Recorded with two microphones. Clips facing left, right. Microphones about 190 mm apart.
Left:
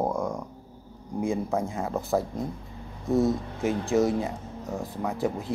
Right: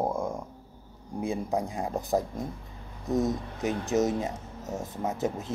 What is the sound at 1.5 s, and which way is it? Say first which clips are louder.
Speech: left 1 dB; 15° right (ahead or behind).